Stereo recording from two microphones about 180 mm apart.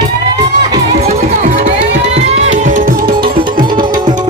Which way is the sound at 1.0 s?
40° right (ahead or behind).